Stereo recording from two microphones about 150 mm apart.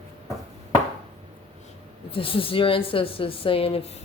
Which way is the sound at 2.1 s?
35° left (ahead or behind).